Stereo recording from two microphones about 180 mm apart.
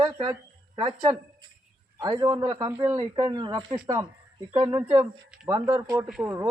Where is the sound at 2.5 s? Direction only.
15° right (ahead or behind).